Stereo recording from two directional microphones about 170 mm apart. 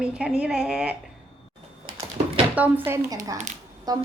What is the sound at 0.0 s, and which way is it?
Speech, 5° right (ahead or behind).